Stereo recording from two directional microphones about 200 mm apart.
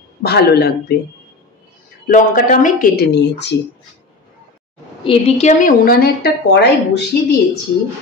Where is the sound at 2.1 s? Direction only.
40° left (ahead or behind); by 3.5 s 60° left (ahead or behind).